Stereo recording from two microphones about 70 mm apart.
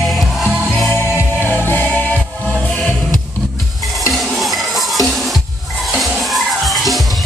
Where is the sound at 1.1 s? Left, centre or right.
Left.